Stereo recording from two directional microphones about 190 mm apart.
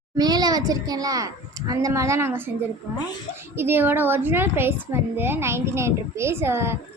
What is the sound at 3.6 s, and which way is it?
A woman's voice, 10° right (ahead or behind).